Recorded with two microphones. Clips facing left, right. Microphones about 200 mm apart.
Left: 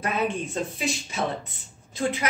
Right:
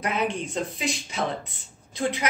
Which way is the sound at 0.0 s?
20° right (ahead or behind).